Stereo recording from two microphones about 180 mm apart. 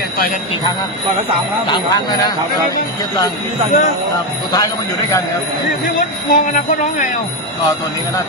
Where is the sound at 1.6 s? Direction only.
25° left (ahead or behind).